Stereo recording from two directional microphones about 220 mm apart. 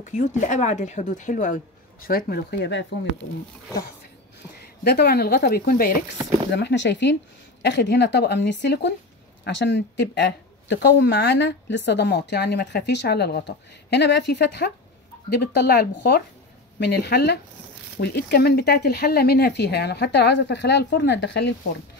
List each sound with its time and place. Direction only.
0.0 s speech: 35° left (ahead or behind); by 2.9 s 50° left (ahead or behind)
4.8 s speech: 45° left (ahead or behind)
6.5 s speech: 50° left (ahead or behind)